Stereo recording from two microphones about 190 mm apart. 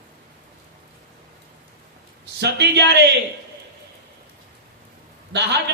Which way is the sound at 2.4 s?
65° right (ahead or behind).